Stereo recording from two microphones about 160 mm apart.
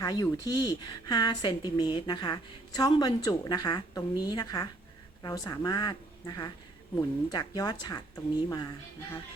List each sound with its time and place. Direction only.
0.0 s a woman's voice: 20° left (ahead or behind)